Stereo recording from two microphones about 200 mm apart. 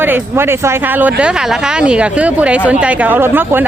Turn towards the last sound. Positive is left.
turn(degrees=-10)  # may be behind; listen again after turning